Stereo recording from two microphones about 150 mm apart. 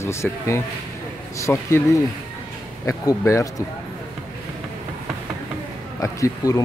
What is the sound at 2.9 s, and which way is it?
Speech, 20° left (ahead or behind).